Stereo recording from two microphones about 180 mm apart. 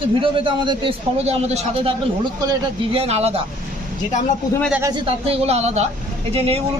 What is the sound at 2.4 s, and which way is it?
Speech, 20° right (ahead or behind).